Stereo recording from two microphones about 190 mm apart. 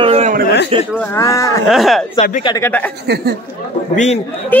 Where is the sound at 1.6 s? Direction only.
Centre (ahead or behind).